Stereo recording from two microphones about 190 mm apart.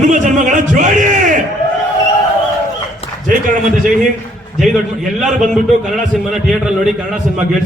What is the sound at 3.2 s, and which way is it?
Speech, 45° right (ahead or behind).